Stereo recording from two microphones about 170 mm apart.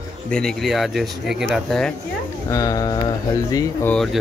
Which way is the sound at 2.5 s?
20° left (ahead or behind).